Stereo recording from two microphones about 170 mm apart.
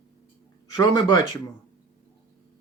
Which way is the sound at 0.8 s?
25° left (ahead or behind).